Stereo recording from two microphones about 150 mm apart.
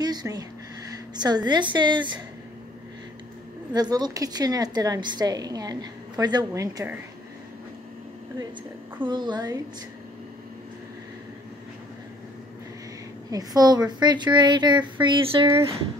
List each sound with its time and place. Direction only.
0.0 s a sound: 25° right (ahead or behind)
1.1 s a woman's voice: 30° right (ahead or behind)
3.7 s a woman's voice: 25° right (ahead or behind)
9.0 s a woman's voice: 30° right (ahead or behind)
13.3 s a woman's voice: 25° right (ahead or behind)
15.4 s a woman's voice: 20° right (ahead or behind)